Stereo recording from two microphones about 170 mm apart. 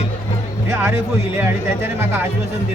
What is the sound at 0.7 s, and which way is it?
Speech, 15° right (ahead or behind).